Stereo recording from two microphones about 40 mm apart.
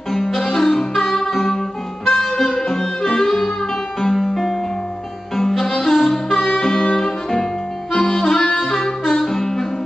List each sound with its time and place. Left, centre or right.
0.1 s music: centre
7.9 s harmonica: centre
8.2 s music: centre